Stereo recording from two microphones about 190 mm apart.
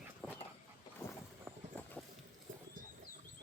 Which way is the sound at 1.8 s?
10° left (ahead or behind).